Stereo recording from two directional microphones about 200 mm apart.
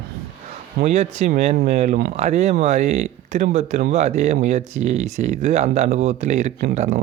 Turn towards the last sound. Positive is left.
turn(degrees=-40)  # may be behind; listen again after turning